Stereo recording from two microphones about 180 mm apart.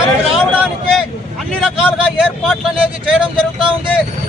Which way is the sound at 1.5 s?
Centre (ahead or behind).